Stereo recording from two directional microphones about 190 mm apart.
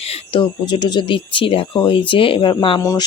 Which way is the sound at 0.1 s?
25° left (ahead or behind).